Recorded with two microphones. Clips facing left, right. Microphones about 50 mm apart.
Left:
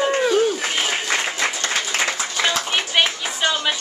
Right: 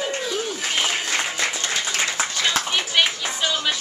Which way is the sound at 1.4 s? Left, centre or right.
Left.